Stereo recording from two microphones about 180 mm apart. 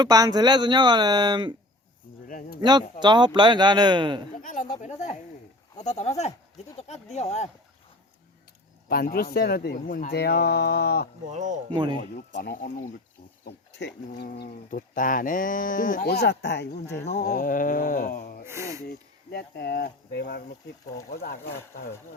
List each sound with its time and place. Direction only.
0.0 s speech: 20° right (ahead or behind)
2.2 s speech: 50° left (ahead or behind)
2.6 s speech: 25° right (ahead or behind)
4.4 s speech: 45° left (ahead or behind)
8.9 s speech: 55° left (ahead or behind)
11.3 s speech: 40° right (ahead or behind)
11.7 s speech: 25° right (ahead or behind)
12.1 s speech: 55° left (ahead or behind)
13.4 s cricket: 70° left (ahead or behind)
14.2 s speech: 60° left (ahead or behind)
17.2 s speech: 50° left (ahead or behind)
18.4 s speech: 15° right (ahead or behind)
18.9 s speech: 65° left (ahead or behind)